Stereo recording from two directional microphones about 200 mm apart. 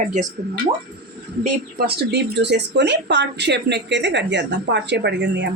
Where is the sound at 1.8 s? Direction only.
55° right (ahead or behind).